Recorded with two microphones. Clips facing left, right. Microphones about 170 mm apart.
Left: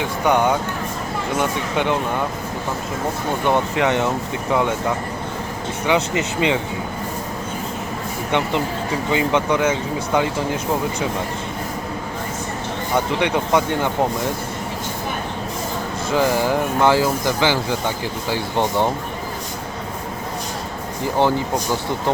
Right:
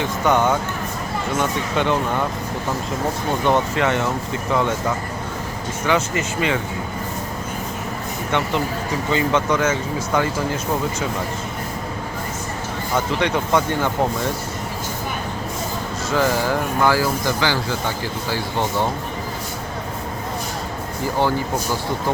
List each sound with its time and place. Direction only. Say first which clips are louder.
0.0 s speech: even; 15° left (ahead or behind)
3.4 s speech: even; 15° left (ahead or behind)
5.8 s speech: left 1 dB; 20° left (ahead or behind)
8.3 s speech: left 1 dB; 15° left (ahead or behind)
13.1 s speech: even; 15° left (ahead or behind)
16.1 s speech: left 2 dB; 15° left (ahead or behind)
21.2 s speech: left 2 dB; 20° left (ahead or behind)